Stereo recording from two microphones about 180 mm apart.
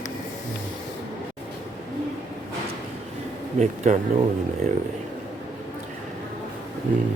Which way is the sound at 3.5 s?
40° right (ahead or behind).